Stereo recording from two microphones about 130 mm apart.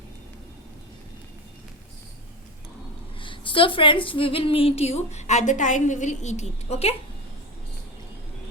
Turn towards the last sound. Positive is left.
turn(degrees=55)  # may be behind; listen again after turning